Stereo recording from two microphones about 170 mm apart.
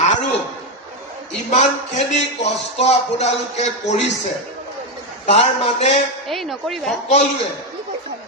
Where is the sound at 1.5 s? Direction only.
40° left (ahead or behind).